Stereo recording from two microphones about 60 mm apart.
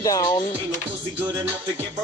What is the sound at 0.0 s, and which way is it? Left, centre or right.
Speech, left.